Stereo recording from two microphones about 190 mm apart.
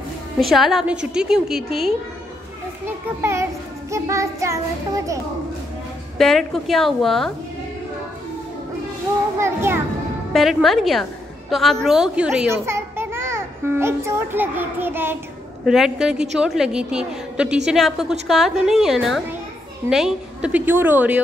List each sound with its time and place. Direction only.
0.4 s a woman's voice: centre (ahead or behind)
3.2 s a woman's voice: 15° right (ahead or behind)
6.1 s a woman's voice: centre (ahead or behind)
9.4 s a woman's voice: 15° right (ahead or behind)
10.3 s a woman's voice: centre (ahead or behind)